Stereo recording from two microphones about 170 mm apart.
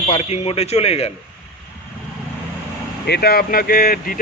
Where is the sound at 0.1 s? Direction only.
40° left (ahead or behind).